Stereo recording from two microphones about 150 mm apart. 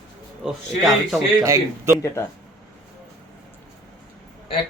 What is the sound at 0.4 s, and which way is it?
Speech, centre (ahead or behind).